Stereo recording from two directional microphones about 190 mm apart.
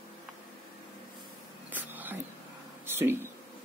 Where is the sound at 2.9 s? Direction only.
10° right (ahead or behind).